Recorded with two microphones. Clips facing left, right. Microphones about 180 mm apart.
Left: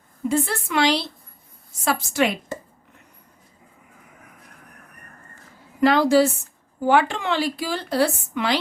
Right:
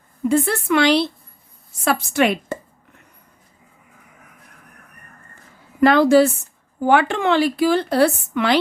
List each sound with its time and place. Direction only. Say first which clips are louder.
0.3 s a woman's voice: right 5 dB; 60° right (ahead or behind)
5.8 s a woman's voice: right 4 dB; 55° right (ahead or behind)